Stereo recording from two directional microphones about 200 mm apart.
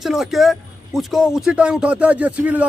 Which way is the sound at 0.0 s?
Centre (ahead or behind).